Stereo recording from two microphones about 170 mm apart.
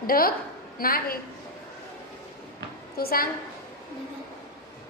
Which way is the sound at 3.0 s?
60° left (ahead or behind).